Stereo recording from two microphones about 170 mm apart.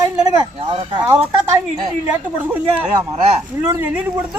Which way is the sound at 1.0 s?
15° right (ahead or behind).